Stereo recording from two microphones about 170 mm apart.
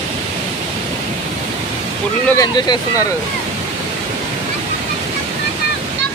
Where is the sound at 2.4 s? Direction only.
20° left (ahead or behind).